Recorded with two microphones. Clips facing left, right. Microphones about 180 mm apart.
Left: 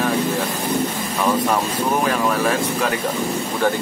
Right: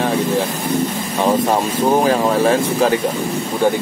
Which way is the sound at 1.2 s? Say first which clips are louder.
Right 4 dB; 30° right (ahead or behind).